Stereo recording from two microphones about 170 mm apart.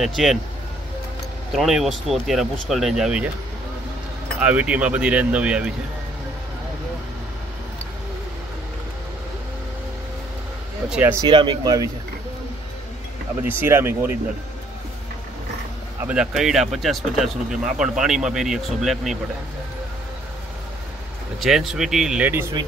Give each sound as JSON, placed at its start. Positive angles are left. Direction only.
{"t": 0.0, "sound": "speech", "side_deg": 0}
{"t": 1.5, "sound": "speech", "side_deg": 0}
{"t": 4.4, "sound": "speech", "side_deg": -5}
{"t": 10.9, "sound": "speech", "side_deg": -10}
{"t": 11.2, "sound": "speech", "side_deg": -30}
{"t": 13.4, "sound": "speech", "side_deg": -15}
{"t": 16.0, "sound": "speech", "side_deg": -5}
{"t": 21.4, "sound": "speech", "side_deg": 0}